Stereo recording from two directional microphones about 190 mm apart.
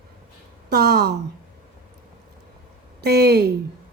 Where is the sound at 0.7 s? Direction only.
55° right (ahead or behind).